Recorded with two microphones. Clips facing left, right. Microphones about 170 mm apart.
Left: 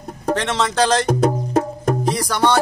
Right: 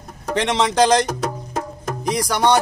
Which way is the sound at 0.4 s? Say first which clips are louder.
Right 4 dB; 15° right (ahead or behind).